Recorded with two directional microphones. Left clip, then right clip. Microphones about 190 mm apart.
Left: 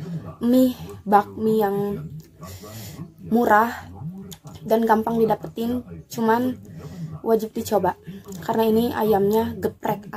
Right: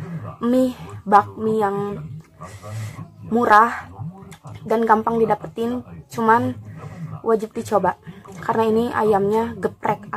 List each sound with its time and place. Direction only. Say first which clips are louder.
0.4 s a woman's voice: even; 10° left (ahead or behind)
3.3 s a woman's voice: right 4 dB; 10° left (ahead or behind)